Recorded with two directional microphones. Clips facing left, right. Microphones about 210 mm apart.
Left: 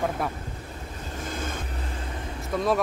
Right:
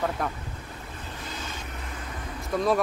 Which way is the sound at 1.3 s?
50° left (ahead or behind).